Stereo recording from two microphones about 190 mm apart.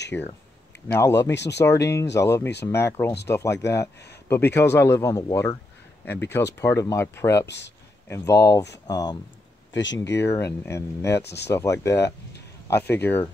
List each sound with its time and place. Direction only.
0.1 s speech: 10° left (ahead or behind)
1.3 s speech: 65° left (ahead or behind)
1.6 s speech: 15° left (ahead or behind)
7.4 s speech: 65° left (ahead or behind)
8.1 s speech: 15° left (ahead or behind)
9.7 s a sound: 75° left (ahead or behind)
10.1 s speech: 15° left (ahead or behind)